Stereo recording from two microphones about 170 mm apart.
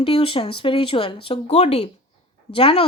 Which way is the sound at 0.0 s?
30° left (ahead or behind).